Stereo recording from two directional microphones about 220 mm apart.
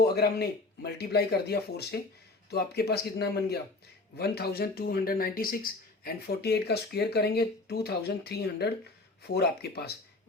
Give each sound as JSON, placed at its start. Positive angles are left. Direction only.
{"t": 0.0, "sound": "speech", "side_deg": 45}